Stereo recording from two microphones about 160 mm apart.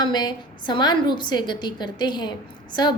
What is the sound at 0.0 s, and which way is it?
A woman's voice, 25° left (ahead or behind).